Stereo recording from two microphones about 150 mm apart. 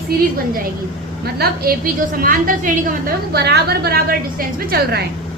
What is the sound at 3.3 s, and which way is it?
A woman's voice, 90° right.